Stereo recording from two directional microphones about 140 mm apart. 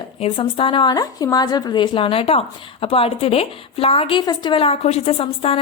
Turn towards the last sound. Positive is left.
turn(degrees=45)  # may be behind; listen again after turning